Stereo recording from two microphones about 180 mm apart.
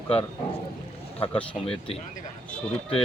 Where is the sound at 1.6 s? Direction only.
30° left (ahead or behind).